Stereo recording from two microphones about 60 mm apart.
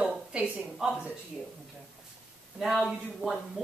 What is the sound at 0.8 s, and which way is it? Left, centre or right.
Speech, centre.